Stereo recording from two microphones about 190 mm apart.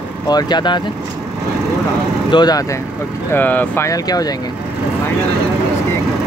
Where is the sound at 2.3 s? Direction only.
20° left (ahead or behind).